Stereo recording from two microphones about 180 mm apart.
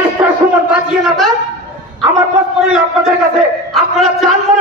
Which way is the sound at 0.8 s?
Centre (ahead or behind).